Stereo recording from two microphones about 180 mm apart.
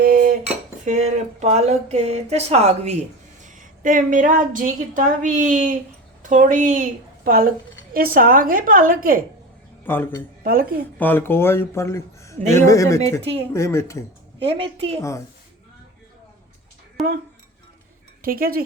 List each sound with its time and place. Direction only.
0.9 s a woman's voice: 40° right (ahead or behind)
9.8 s speech: 10° left (ahead or behind)
10.4 s a woman's voice: 55° right (ahead or behind)
10.9 s speech: 10° left (ahead or behind)
12.4 s speech: 40° right (ahead or behind)
12.6 s speech: 15° left (ahead or behind)
14.4 s speech: 30° right (ahead or behind)
17.0 s speech: centre (ahead or behind)
18.2 s speech: 55° right (ahead or behind)